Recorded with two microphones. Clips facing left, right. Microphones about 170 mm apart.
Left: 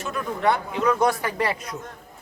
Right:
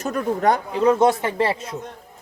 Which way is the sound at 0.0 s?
40° right (ahead or behind).